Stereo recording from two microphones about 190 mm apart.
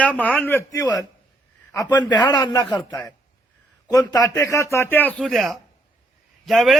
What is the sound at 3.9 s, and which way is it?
Speech, 20° left (ahead or behind).